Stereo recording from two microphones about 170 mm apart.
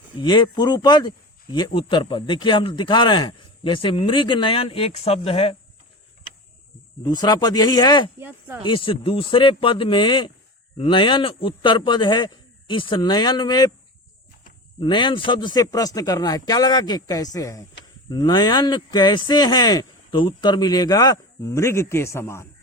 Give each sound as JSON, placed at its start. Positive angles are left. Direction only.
{"t": 0.2, "sound": "speech", "side_deg": 25}
{"t": 7.0, "sound": "speech", "side_deg": 25}
{"t": 8.2, "sound": "speech", "side_deg": -10}
{"t": 8.6, "sound": "speech", "side_deg": 30}
{"t": 14.8, "sound": "speech", "side_deg": 30}